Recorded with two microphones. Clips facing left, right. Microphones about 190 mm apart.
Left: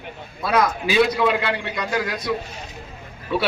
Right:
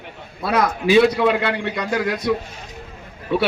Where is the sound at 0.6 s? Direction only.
60° right (ahead or behind).